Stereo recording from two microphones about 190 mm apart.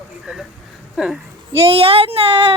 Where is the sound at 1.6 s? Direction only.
30° right (ahead or behind).